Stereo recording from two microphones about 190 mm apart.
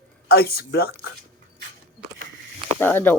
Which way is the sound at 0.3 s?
55° left (ahead or behind).